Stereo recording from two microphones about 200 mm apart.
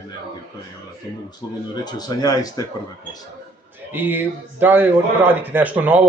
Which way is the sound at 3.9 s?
10° right (ahead or behind).